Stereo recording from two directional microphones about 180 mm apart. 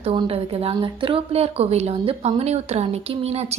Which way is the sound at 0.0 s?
30° right (ahead or behind).